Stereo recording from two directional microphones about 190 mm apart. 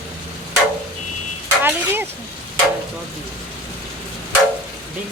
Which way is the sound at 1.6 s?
10° right (ahead or behind).